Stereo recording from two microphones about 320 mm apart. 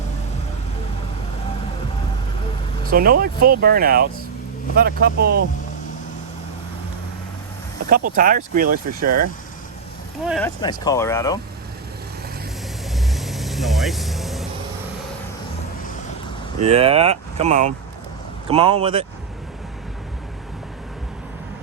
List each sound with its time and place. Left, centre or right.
2.8 s speech: right
8.1 s speech: right
10.2 s speech: centre
10.6 s speech: centre
13.1 s vehicle: centre
16.6 s speech: centre